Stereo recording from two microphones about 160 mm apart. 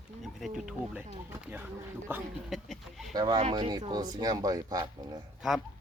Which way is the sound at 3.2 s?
25° right (ahead or behind).